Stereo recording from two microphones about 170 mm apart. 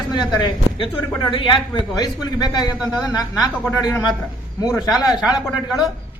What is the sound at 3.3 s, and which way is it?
Speech, 5° right (ahead or behind).